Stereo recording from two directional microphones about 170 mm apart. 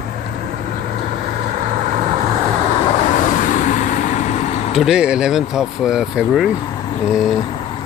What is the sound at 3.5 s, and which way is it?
Vehicle, 50° left (ahead or behind).